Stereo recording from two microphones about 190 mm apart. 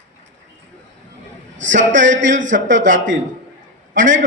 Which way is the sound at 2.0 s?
75° right (ahead or behind).